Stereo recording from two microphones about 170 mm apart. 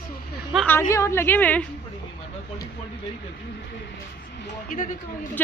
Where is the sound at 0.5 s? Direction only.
5° right (ahead or behind).